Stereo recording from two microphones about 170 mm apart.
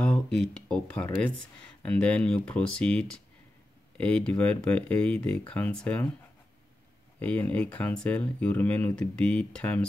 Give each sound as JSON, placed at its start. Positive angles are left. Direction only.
{"t": 0.0, "sound": "speech", "side_deg": 5}
{"t": 7.2, "sound": "speech", "side_deg": 10}